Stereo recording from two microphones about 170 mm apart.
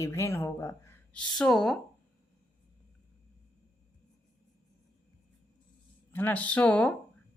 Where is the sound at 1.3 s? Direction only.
Centre (ahead or behind).